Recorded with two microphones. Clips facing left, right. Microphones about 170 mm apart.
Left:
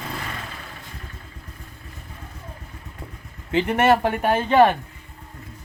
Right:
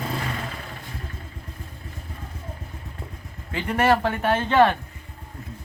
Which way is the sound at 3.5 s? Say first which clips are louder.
Left 3 dB; 25° left (ahead or behind).